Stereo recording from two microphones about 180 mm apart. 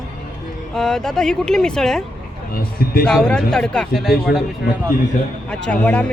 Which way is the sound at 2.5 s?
55° left (ahead or behind).